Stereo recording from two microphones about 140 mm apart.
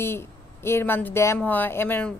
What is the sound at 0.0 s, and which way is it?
Speech, 15° left (ahead or behind).